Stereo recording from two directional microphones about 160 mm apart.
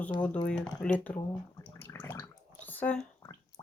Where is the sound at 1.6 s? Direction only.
15° left (ahead or behind).